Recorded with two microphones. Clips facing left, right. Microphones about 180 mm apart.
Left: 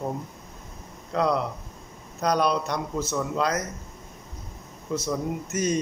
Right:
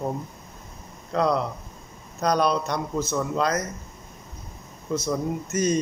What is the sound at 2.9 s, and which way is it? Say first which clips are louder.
Speech: right 3 dB; 15° right (ahead or behind).